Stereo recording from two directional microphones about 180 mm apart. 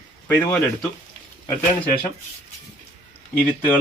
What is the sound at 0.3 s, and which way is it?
Speech, 10° left (ahead or behind).